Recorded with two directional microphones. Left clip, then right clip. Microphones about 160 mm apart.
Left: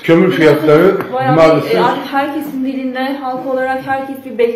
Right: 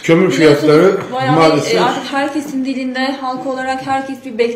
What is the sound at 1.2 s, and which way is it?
A man's voice, 45° right (ahead or behind).